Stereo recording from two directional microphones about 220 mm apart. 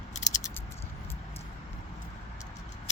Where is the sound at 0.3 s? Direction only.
15° left (ahead or behind).